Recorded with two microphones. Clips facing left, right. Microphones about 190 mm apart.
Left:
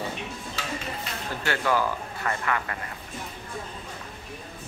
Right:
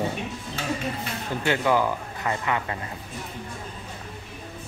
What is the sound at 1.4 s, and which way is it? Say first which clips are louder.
Speech: right 3 dB; 20° right (ahead or behind).